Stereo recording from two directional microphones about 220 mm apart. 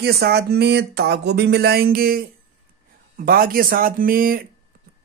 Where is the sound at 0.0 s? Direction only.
45° right (ahead or behind).